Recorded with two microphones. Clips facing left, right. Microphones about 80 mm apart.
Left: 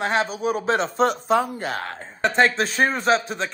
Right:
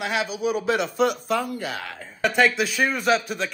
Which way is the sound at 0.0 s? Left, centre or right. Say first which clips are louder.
Left 3 dB; left.